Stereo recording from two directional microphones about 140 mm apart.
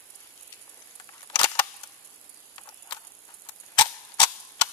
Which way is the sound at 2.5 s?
30° left (ahead or behind).